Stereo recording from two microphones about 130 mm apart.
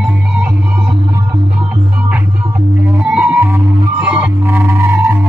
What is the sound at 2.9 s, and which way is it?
Music, 10° right (ahead or behind).